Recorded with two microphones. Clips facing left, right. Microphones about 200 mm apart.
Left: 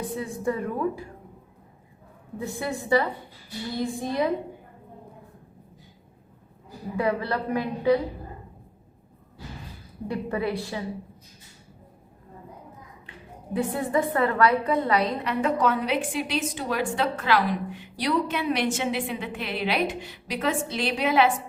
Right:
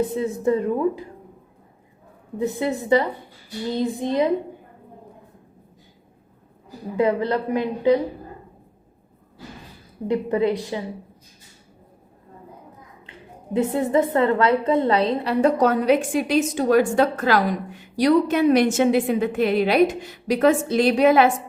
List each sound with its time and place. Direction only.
0.0 s a woman's voice: 25° right (ahead or behind)
2.4 s a woman's voice: 20° right (ahead or behind)
6.9 s a woman's voice: 20° right (ahead or behind)
10.1 s a woman's voice: 20° right (ahead or behind)
13.1 s a woman's voice: 20° right (ahead or behind); by 21.3 s 45° right (ahead or behind)